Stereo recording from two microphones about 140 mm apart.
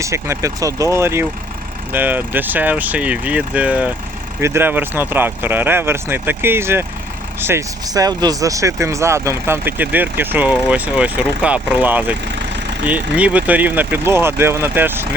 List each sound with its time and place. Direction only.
0.0 s speech: 20° right (ahead or behind)